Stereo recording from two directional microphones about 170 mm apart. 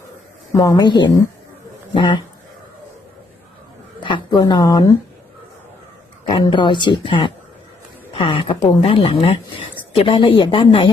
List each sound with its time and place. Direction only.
0.5 s speech: 20° left (ahead or behind)
4.0 s speech: 25° left (ahead or behind)
6.2 s speech: 30° left (ahead or behind)